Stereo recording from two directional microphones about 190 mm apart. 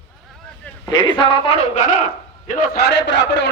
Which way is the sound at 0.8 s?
25° left (ahead or behind).